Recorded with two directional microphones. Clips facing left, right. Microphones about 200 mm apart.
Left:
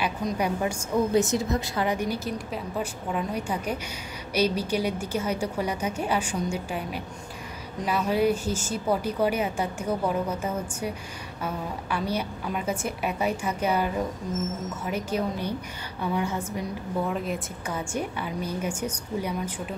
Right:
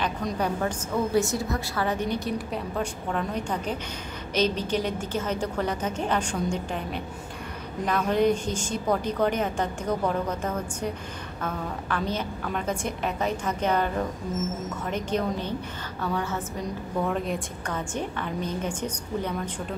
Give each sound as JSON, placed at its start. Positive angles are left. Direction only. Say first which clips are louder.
{"t": 0.0, "sound": "a woman's voice", "louder": "left 1 dB", "side_deg": 0}
{"t": 0.4, "sound": "a woman's voice", "louder": "even", "side_deg": 10}
{"t": 17.1, "sound": "a woman's voice", "louder": "right 1 dB", "side_deg": 0}